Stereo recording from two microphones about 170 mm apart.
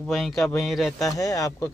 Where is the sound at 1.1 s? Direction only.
20° left (ahead or behind).